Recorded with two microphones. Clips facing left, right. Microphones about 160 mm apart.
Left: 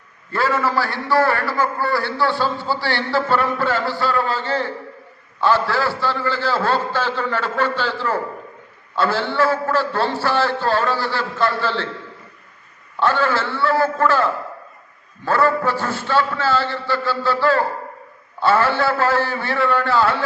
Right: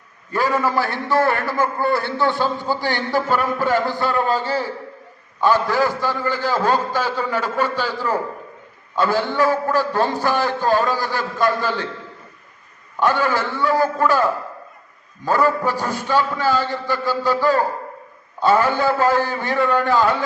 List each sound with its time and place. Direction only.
0.3 s a man's voice: 15° right (ahead or behind)
13.0 s a man's voice: 15° right (ahead or behind)